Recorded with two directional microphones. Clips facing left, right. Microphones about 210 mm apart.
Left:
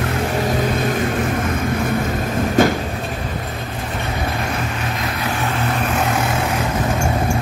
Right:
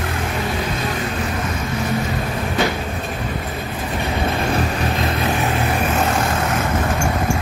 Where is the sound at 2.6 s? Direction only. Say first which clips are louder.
Left 6 dB; 50° left (ahead or behind).